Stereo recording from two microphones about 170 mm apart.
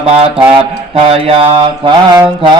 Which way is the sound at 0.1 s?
35° right (ahead or behind).